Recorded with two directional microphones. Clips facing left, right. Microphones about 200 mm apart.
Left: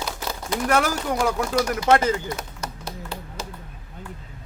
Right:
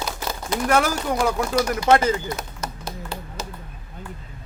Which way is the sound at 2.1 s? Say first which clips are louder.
Right 1 dB; 20° right (ahead or behind).